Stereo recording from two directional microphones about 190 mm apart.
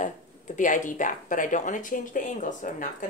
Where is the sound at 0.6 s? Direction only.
40° left (ahead or behind).